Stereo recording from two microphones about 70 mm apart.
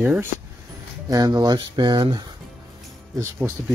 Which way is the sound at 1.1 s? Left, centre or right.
Right.